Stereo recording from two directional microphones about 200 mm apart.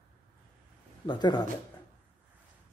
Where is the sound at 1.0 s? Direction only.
20° left (ahead or behind).